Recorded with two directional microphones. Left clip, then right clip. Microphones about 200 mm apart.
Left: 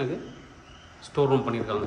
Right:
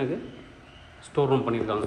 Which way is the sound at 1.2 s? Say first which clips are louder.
Even; 10° left (ahead or behind).